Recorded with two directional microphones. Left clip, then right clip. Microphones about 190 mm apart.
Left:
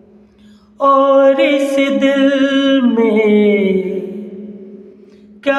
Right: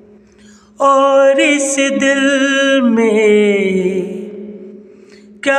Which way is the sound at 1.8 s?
20° right (ahead or behind).